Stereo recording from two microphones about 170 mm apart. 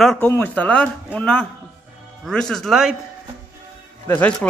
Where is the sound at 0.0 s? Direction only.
Centre (ahead or behind).